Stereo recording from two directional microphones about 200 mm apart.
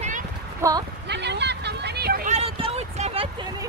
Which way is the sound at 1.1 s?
60° right (ahead or behind).